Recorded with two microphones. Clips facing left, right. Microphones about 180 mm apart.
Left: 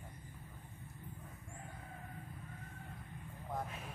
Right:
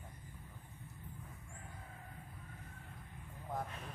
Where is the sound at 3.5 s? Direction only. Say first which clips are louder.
Even; 5° left (ahead or behind).